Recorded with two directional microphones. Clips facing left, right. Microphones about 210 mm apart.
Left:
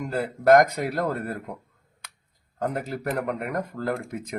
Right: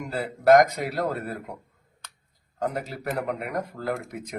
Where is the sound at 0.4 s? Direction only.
50° left (ahead or behind).